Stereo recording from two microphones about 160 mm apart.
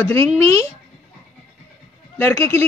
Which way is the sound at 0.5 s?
40° right (ahead or behind).